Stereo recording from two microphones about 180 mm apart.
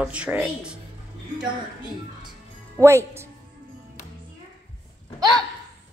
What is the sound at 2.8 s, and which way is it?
Speech, 15° right (ahead or behind).